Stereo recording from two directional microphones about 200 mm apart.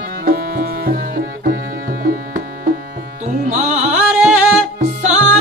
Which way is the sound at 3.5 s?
35° right (ahead or behind).